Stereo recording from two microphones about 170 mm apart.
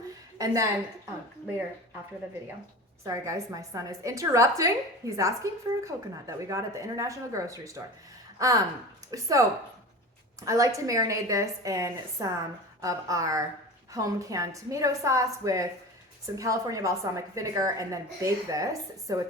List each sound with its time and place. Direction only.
0.3 s a woman's voice: 20° right (ahead or behind)
3.0 s a woman's voice: 20° right (ahead or behind)
10.4 s a woman's voice: 20° right (ahead or behind)